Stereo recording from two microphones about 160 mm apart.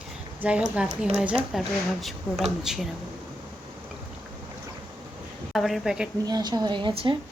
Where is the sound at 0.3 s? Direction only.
10° right (ahead or behind).